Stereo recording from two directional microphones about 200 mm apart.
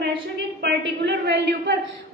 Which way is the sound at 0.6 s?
60° right (ahead or behind).